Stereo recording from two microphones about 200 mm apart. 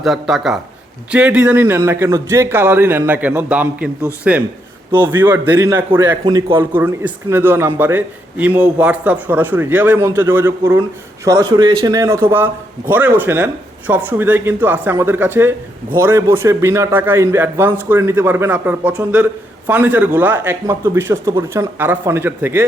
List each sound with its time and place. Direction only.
0.0 s a man's voice: centre (ahead or behind); by 6.7 s 20° right (ahead or behind)
6.7 s speech: 10° right (ahead or behind)